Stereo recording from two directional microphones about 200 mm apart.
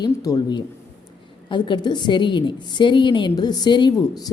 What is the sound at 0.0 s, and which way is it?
A woman's voice, 20° left (ahead or behind).